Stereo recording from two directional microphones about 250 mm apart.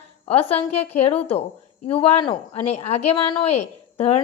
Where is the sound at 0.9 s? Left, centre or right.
Left.